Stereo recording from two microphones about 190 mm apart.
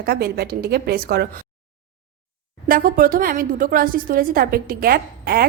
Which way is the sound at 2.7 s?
45° right (ahead or behind).